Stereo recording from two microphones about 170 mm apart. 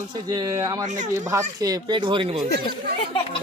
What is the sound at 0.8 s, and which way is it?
Speech, 45° right (ahead or behind).